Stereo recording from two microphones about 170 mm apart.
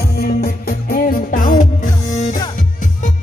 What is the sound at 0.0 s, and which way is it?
Music, 65° left (ahead or behind).